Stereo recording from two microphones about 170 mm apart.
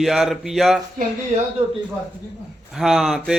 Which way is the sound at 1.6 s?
25° right (ahead or behind).